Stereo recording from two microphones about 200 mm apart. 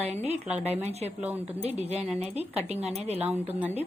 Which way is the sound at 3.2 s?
10° right (ahead or behind).